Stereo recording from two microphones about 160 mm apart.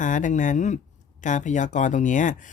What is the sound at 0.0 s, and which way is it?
Speech, 55° left (ahead or behind).